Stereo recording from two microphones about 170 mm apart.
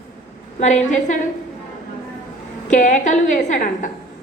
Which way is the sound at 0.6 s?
45° left (ahead or behind).